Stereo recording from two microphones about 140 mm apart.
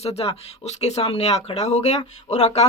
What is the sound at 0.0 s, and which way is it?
Speech, 50° left (ahead or behind).